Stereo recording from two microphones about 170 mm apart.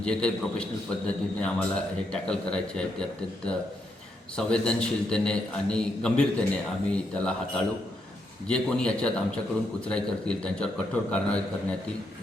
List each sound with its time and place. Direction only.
0.0 s a man's voice: 5° left (ahead or behind)